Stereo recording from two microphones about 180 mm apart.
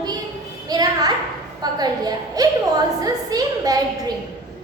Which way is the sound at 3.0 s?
20° right (ahead or behind).